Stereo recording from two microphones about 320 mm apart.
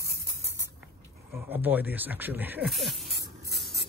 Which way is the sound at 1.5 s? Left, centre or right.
Centre.